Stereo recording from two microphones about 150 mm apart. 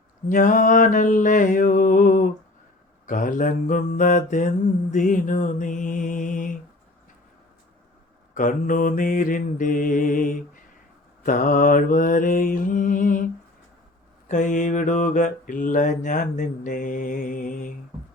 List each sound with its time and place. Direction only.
0.3 s mantra: 60° left (ahead or behind)
8.4 s mantra: 60° left (ahead or behind)
14.3 s mantra: 55° left (ahead or behind)